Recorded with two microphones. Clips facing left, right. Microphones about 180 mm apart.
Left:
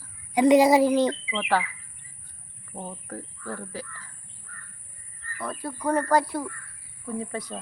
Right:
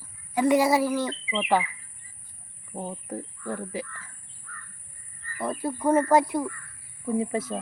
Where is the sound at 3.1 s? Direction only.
20° right (ahead or behind).